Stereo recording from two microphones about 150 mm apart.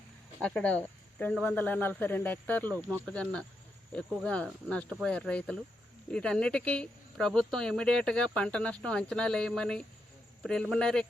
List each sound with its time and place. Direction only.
0.4 s speech: 10° left (ahead or behind)
2.7 s speech: 15° right (ahead or behind)
3.1 s speech: 5° left (ahead or behind)